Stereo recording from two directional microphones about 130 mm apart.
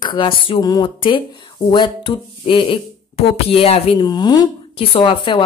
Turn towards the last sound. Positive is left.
turn(degrees=40)  # may be behind; listen again after turning